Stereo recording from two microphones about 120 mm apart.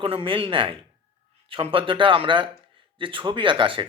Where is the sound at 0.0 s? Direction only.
50° right (ahead or behind).